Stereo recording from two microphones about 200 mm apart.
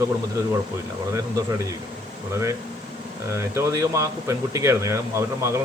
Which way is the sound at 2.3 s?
15° right (ahead or behind).